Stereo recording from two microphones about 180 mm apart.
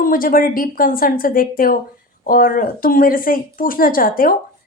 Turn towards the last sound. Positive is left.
turn(degrees=50)  # may be behind; listen again after turning